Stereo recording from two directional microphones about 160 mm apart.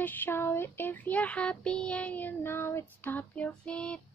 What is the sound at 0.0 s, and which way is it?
Child singing, 10° left (ahead or behind).